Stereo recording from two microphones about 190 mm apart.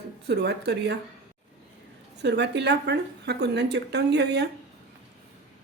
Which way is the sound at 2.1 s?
65° right (ahead or behind).